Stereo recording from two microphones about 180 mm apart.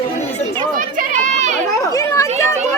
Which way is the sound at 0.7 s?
50° right (ahead or behind).